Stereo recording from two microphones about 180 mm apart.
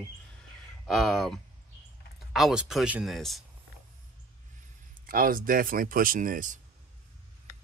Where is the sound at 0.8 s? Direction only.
Centre (ahead or behind).